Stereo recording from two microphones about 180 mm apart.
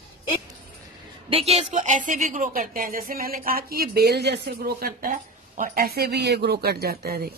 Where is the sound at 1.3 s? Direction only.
35° right (ahead or behind).